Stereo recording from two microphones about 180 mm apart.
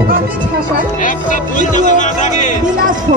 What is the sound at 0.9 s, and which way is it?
Speech, 45° left (ahead or behind).